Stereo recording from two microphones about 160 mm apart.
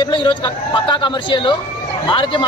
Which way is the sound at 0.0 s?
30° left (ahead or behind).